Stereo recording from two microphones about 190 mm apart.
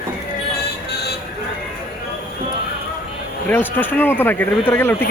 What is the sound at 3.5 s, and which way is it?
Speech, 10° left (ahead or behind).